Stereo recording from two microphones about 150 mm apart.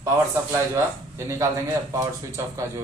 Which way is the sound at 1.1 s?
20° right (ahead or behind).